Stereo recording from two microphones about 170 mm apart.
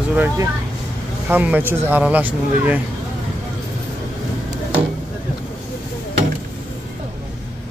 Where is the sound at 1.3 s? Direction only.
10° right (ahead or behind).